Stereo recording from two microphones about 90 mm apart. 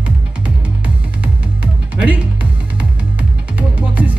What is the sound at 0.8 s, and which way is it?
Music, 15° right (ahead or behind).